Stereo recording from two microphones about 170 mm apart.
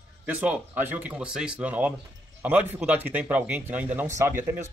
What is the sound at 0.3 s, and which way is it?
Speech, 10° right (ahead or behind).